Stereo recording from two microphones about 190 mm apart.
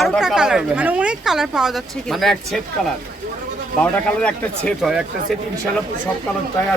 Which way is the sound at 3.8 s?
5° left (ahead or behind).